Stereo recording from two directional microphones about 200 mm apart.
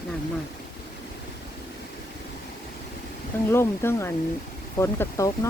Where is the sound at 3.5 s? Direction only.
15° left (ahead or behind).